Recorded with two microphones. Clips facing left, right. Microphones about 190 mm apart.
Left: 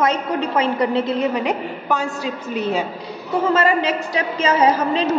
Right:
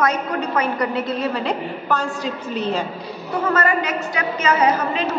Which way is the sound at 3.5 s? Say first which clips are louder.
Left 2 dB; 25° left (ahead or behind).